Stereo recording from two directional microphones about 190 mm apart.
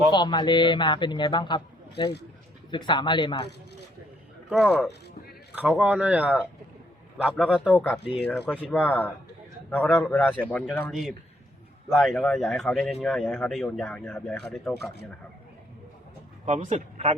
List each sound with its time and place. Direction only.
0.1 s a man's voice: 25° left (ahead or behind)
4.5 s speech: 5° left (ahead or behind)
7.3 s speech: 5° left (ahead or behind)
16.5 s speech: 35° right (ahead or behind)